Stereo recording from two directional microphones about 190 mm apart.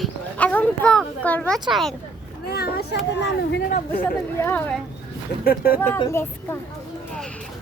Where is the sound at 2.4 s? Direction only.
55° left (ahead or behind).